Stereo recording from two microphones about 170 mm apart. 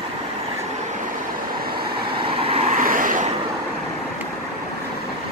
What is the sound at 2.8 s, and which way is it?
Vehicle, 50° right (ahead or behind).